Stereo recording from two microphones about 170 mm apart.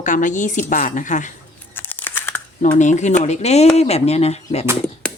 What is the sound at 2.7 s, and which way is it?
Speech, 45° left (ahead or behind).